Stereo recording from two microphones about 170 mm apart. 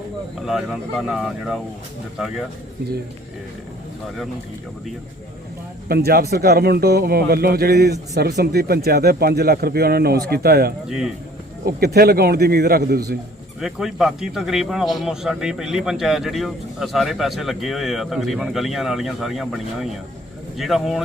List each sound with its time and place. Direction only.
0.4 s a man's voice: centre (ahead or behind)
5.9 s speech: 65° right (ahead or behind)
10.8 s a man's voice: 5° right (ahead or behind)
11.6 s speech: 70° right (ahead or behind)
13.6 s a man's voice: centre (ahead or behind)